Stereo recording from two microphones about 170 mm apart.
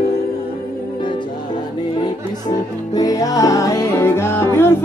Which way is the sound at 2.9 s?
20° left (ahead or behind).